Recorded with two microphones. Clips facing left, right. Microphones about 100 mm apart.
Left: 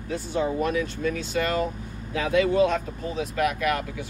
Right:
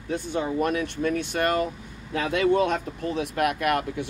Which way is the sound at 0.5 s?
55° right (ahead or behind).